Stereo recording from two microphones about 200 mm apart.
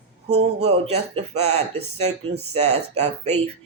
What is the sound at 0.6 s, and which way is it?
Speech, 30° right (ahead or behind).